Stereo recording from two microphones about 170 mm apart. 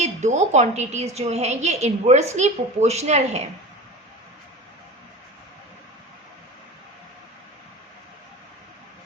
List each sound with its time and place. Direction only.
0.0 s a woman's voice: 45° right (ahead or behind)